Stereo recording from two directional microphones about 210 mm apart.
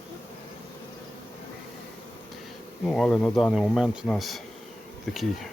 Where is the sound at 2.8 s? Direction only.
Centre (ahead or behind).